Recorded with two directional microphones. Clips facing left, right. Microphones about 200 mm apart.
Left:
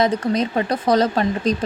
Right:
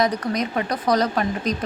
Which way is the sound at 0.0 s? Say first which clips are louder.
Left 3 dB; 25° left (ahead or behind).